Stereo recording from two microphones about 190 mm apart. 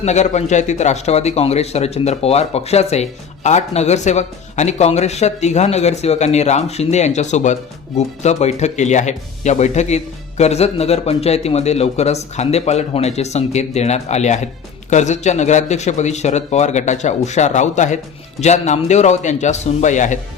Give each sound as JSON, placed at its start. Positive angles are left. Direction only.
{"t": 0.0, "sound": "speech", "side_deg": 35}